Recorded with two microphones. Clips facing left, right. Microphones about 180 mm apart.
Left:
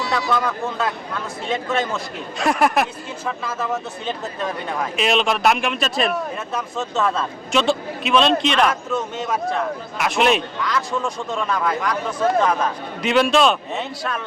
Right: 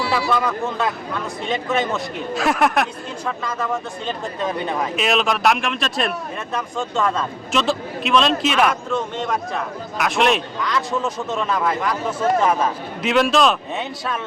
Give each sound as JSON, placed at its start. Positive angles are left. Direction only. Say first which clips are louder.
{"t": 0.1, "sound": "speech", "louder": "left 1 dB", "side_deg": -5}
{"t": 8.7, "sound": "speech", "louder": "right 1 dB", "side_deg": 5}